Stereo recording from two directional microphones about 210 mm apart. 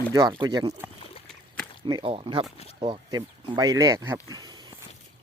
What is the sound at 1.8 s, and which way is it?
Speech, 25° right (ahead or behind).